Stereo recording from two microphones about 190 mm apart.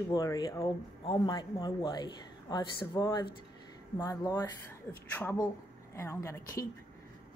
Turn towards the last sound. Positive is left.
turn(degrees=15)  # may be behind; listen again after turning